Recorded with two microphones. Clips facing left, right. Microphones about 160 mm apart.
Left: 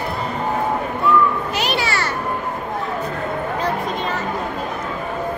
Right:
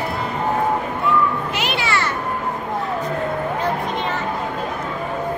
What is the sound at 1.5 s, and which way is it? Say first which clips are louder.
Music: left 1 dB; 40° left (ahead or behind).